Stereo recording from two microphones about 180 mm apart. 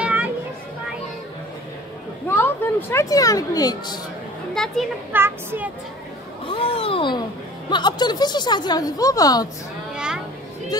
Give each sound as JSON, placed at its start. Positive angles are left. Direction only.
{"t": 0.0, "sound": "a sound", "side_deg": -10}
{"t": 2.2, "sound": "speech", "side_deg": 10}
{"t": 4.6, "sound": "children playing", "side_deg": 5}
{"t": 5.1, "sound": "speech", "side_deg": -10}
{"t": 6.4, "sound": "a woman's voice", "side_deg": 30}
{"t": 9.9, "sound": "a sound", "side_deg": -5}